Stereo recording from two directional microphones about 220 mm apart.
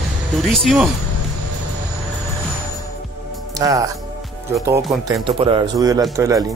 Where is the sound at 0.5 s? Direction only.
Centre (ahead or behind).